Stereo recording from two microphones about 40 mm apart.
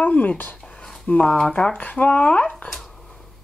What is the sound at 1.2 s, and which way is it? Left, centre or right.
Speech, centre.